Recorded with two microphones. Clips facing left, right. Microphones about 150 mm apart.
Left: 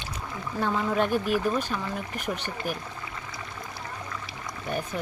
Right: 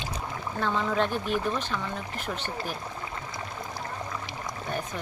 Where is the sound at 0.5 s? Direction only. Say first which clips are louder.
Left 1 dB; 10° left (ahead or behind).